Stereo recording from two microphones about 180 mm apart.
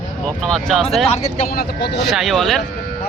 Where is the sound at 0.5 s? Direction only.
Centre (ahead or behind).